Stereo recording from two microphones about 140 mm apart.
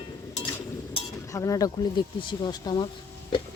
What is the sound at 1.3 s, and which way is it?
Speech, 25° left (ahead or behind).